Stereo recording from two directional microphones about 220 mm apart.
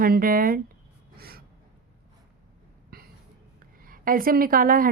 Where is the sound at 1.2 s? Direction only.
45° right (ahead or behind).